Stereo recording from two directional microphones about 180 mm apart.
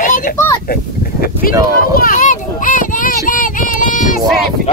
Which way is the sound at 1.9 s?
50° left (ahead or behind).